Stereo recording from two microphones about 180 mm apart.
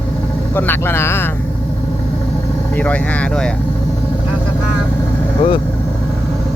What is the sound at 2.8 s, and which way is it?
Speech, 10° left (ahead or behind).